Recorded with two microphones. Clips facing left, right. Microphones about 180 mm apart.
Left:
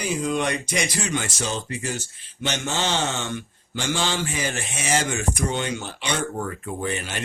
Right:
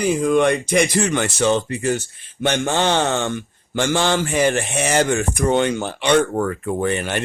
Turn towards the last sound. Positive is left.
turn(degrees=-60)  # may be behind; listen again after turning